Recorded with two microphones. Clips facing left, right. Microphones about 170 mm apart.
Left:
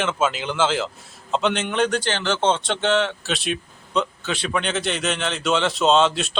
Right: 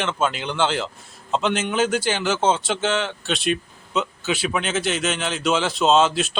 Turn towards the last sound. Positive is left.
turn(degrees=0)  # may be behind; listen again after turning